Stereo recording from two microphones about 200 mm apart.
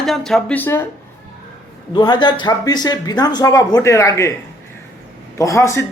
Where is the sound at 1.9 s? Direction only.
20° left (ahead or behind).